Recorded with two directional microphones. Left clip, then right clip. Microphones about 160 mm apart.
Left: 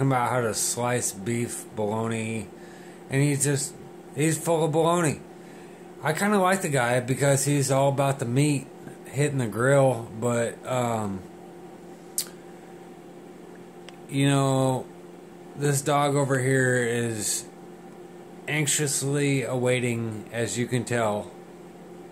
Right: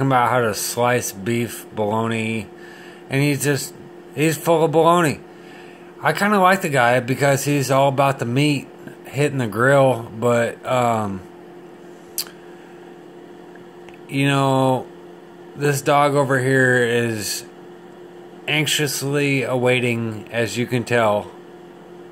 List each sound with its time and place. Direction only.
0.0 s speech: 25° right (ahead or behind)
14.1 s speech: 20° right (ahead or behind)